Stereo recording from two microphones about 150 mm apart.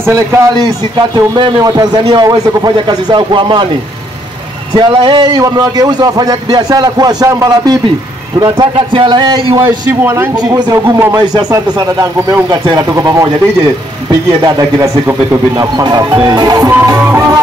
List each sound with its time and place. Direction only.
0.0 s a man's voice: 20° right (ahead or behind)
4.7 s a man's voice: 30° right (ahead or behind)
10.0 s a man's voice: 20° right (ahead or behind)
14.4 s a man's voice: 20° right (ahead or behind)